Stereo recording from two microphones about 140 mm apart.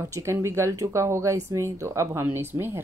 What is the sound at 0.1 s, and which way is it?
Speech, 20° right (ahead or behind).